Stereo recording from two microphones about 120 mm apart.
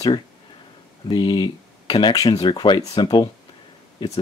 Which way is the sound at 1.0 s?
40° left (ahead or behind).